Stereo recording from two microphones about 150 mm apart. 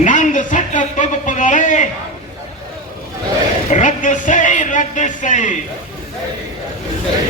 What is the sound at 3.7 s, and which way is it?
Speech, 55° left (ahead or behind).